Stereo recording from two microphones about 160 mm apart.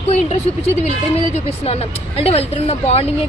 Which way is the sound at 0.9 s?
40° left (ahead or behind).